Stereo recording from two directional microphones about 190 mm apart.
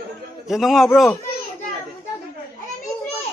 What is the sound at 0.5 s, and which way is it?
Speech, centre (ahead or behind).